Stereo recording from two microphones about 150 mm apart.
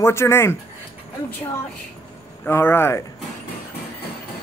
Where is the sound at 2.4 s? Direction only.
15° left (ahead or behind).